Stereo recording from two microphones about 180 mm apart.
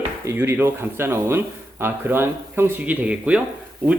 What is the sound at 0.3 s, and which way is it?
Speech, 10° right (ahead or behind).